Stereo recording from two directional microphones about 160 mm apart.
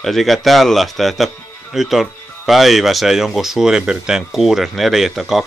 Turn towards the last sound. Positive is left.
turn(degrees=0)  # may be behind; listen again after turning